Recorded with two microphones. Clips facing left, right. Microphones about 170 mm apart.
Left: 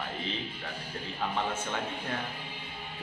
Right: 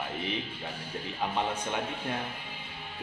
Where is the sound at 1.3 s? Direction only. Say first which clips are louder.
Right 2 dB; 15° right (ahead or behind).